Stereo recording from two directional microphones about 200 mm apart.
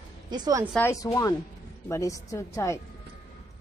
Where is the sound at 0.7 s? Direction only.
15° left (ahead or behind).